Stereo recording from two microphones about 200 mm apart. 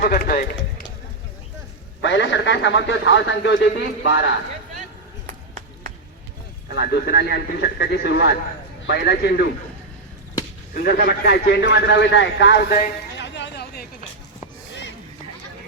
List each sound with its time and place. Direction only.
0.0 s a man's voice: 45° left (ahead or behind)
2.0 s a man's voice: 65° left (ahead or behind)
6.7 s a man's voice: 55° left (ahead or behind)
10.8 s a man's voice: 50° left (ahead or behind)
13.1 s a sound: 60° left (ahead or behind)